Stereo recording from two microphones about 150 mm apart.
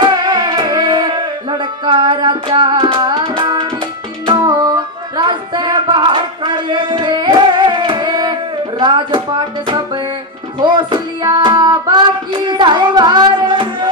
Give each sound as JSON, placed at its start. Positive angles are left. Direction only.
{"t": 0.0, "sound": "music", "side_deg": -30}